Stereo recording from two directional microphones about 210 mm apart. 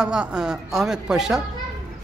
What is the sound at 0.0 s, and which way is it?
A man's voice, 5° right (ahead or behind).